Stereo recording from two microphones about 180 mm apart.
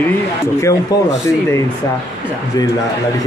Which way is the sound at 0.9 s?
20° left (ahead or behind).